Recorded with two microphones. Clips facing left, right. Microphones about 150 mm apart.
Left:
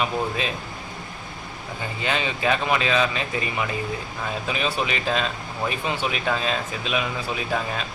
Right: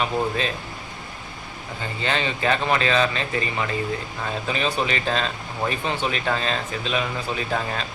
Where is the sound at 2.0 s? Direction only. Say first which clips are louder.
Right 1 dB; 10° left (ahead or behind).